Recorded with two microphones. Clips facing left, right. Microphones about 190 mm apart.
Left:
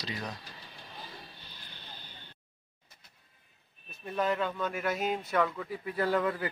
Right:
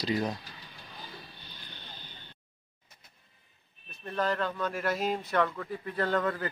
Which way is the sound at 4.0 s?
5° left (ahead or behind).